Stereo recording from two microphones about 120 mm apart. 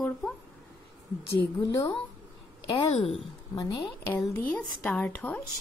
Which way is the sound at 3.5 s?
40° left (ahead or behind).